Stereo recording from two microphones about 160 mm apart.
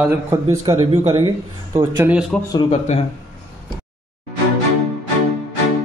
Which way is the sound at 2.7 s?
45° left (ahead or behind).